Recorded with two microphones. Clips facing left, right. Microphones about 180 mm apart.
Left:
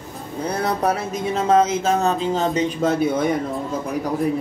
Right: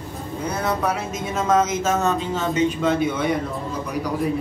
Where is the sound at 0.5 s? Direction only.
35° left (ahead or behind).